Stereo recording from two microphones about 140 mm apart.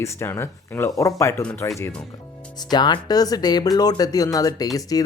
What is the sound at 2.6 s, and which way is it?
Speech, 30° left (ahead or behind).